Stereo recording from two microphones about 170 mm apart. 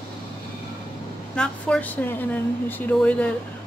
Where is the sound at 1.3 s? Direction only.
5° left (ahead or behind).